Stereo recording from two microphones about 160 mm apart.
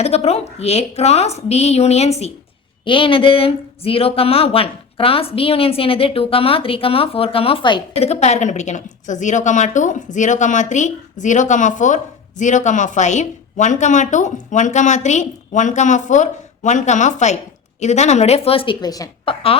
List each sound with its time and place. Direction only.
0.0 s a woman's voice: 40° left (ahead or behind); by 19.1 s 25° left (ahead or behind)
19.2 s speech: 35° left (ahead or behind)